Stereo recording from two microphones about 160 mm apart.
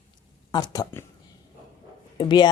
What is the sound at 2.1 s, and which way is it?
Speech, 30° left (ahead or behind).